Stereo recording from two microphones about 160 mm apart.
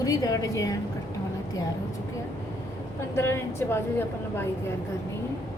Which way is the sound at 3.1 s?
15° left (ahead or behind).